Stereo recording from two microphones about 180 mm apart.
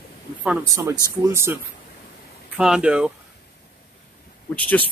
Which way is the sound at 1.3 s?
15° right (ahead or behind).